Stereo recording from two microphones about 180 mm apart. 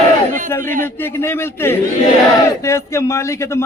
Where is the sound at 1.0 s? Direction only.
15° left (ahead or behind).